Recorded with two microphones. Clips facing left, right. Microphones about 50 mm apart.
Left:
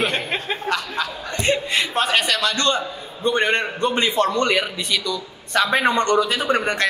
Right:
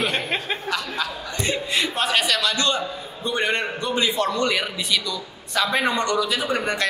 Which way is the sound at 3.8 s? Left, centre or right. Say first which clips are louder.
Left 3 dB; left.